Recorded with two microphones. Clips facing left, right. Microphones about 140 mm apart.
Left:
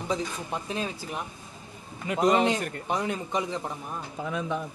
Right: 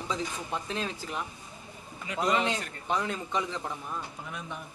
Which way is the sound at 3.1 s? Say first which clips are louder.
Left 3 dB; 15° left (ahead or behind).